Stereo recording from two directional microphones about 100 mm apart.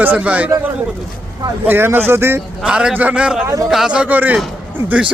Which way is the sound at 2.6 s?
10° right (ahead or behind).